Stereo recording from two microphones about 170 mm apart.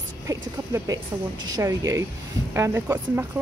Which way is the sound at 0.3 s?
20° right (ahead or behind).